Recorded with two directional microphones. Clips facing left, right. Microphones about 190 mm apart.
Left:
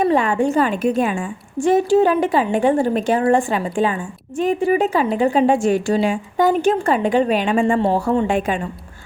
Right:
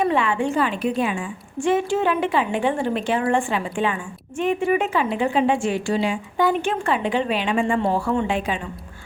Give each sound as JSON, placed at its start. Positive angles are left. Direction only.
{"t": 0.0, "sound": "a woman's voice", "side_deg": 40}